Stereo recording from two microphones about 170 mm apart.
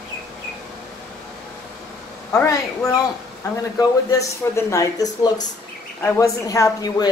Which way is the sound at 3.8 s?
20° left (ahead or behind).